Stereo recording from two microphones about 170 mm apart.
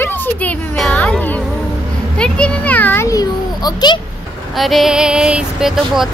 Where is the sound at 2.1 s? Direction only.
5° left (ahead or behind); by 4.0 s 25° left (ahead or behind).